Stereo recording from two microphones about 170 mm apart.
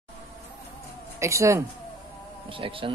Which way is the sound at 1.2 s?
15° right (ahead or behind).